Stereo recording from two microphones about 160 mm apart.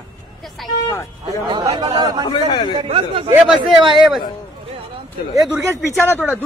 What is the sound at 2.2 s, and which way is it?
Speech, 25° left (ahead or behind).